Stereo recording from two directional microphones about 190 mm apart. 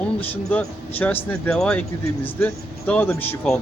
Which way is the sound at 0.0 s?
10° left (ahead or behind).